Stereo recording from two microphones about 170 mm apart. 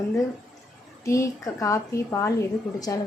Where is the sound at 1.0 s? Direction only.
20° left (ahead or behind).